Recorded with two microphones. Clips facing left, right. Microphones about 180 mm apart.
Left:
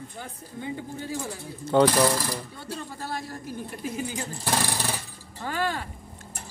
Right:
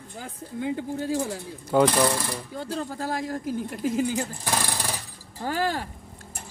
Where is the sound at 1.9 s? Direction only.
10° left (ahead or behind).